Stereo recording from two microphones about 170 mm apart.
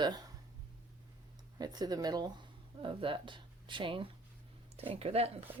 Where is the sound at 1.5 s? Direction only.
25° right (ahead or behind).